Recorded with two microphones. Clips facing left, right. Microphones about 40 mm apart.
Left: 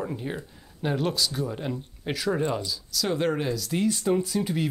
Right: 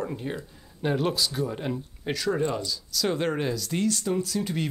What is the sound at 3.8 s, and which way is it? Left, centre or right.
Speech, centre.